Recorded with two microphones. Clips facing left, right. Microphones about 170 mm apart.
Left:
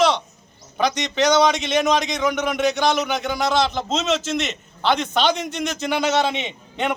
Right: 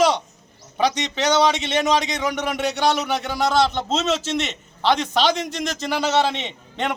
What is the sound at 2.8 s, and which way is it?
A man's voice, centre (ahead or behind).